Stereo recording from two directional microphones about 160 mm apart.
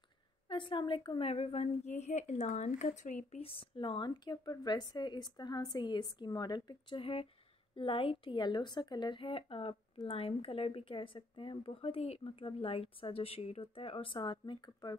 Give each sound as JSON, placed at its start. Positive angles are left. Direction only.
{"t": 0.5, "sound": "a woman's voice", "side_deg": 30}